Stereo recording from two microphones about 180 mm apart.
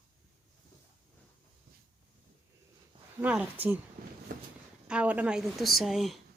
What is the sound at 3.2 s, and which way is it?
Speech, 5° right (ahead or behind).